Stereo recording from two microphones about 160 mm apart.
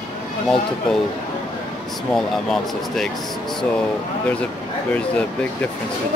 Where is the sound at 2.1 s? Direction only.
5° left (ahead or behind).